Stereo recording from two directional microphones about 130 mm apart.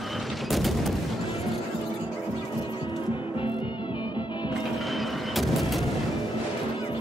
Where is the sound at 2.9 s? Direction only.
35° left (ahead or behind).